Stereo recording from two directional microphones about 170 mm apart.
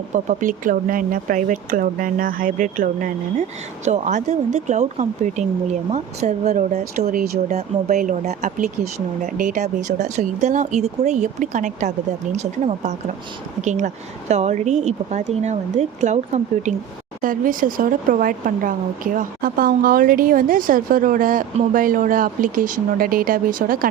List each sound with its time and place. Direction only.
0.1 s speech: 45° right (ahead or behind)
17.2 s speech: 55° right (ahead or behind)